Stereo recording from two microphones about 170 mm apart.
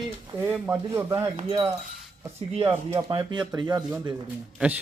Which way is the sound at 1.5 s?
20° right (ahead or behind).